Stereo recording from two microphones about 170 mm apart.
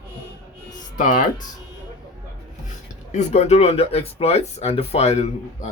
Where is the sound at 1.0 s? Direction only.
50° left (ahead or behind).